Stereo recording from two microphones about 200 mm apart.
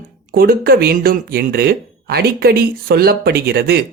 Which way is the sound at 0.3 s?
50° right (ahead or behind).